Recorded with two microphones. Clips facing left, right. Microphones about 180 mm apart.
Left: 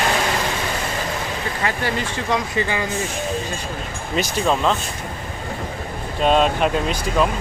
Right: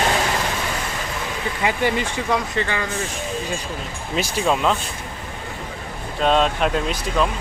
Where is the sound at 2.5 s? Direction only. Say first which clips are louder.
Left 1 dB; 15° left (ahead or behind).